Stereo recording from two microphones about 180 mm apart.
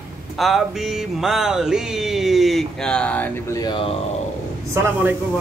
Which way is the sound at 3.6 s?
25° left (ahead or behind).